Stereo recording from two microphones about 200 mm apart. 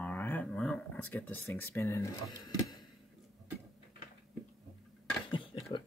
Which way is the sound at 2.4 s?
20° left (ahead or behind).